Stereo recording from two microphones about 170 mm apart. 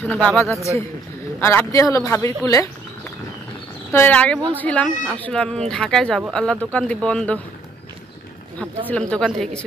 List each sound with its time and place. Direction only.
0.0 s speech: 5° left (ahead or behind)
3.9 s speech: 10° left (ahead or behind)
8.5 s speech: 5° left (ahead or behind)